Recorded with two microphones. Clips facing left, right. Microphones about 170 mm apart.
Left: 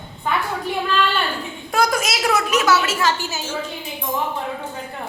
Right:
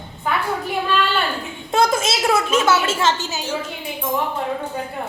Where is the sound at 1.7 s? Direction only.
25° right (ahead or behind).